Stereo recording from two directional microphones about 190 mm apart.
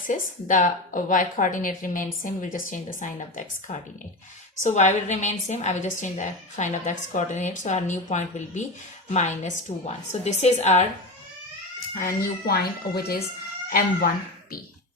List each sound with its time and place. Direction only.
0.1 s a woman's voice: 40° left (ahead or behind)
11.9 s speech: 50° left (ahead or behind)